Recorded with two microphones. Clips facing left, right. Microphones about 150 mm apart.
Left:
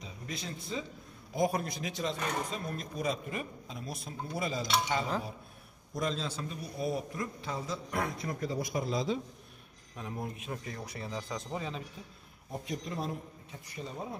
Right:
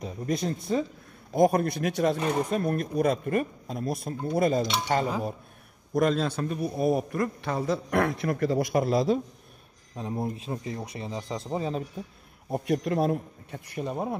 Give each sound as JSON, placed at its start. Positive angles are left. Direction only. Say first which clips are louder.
{"t": 0.0, "sound": "a man's voice", "louder": "right 13 dB", "side_deg": -50}
{"t": 9.9, "sound": "speech", "louder": "right 8 dB", "side_deg": -30}
{"t": 12.4, "sound": "a man's voice", "louder": "right 11 dB", "side_deg": -65}